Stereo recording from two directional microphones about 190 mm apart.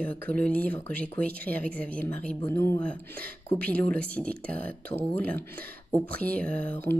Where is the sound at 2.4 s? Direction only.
15° left (ahead or behind).